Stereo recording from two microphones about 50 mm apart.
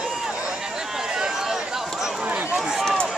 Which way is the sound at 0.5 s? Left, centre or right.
Centre.